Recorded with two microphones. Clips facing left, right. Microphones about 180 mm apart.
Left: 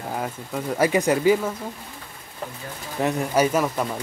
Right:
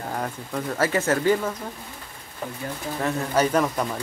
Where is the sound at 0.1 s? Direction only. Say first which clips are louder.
Left 1 dB; 5° left (ahead or behind).